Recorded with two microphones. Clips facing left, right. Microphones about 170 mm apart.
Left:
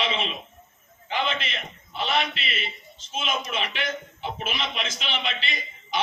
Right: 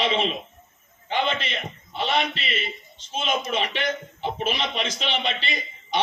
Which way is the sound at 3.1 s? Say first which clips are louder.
Right 3 dB; 35° right (ahead or behind).